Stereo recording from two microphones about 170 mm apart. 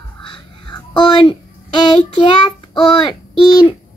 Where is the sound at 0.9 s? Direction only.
30° left (ahead or behind).